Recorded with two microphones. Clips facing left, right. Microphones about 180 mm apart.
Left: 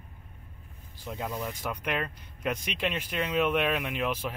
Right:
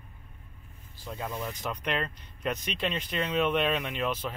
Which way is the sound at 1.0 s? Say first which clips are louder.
Left 1 dB; 15° left (ahead or behind).